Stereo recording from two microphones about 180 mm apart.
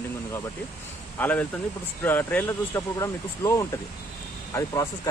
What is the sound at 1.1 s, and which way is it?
A man's voice, 10° left (ahead or behind).